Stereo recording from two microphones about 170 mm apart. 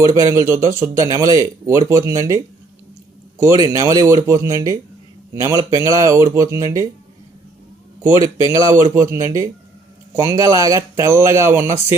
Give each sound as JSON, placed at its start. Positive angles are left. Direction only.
{"t": 0.0, "sound": "speech", "side_deg": -20}
{"t": 8.4, "sound": "speech", "side_deg": -15}